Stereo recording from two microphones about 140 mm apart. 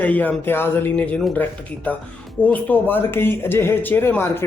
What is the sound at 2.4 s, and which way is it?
Speech, 10° left (ahead or behind).